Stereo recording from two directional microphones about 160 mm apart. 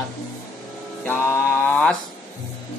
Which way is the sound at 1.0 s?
10° left (ahead or behind).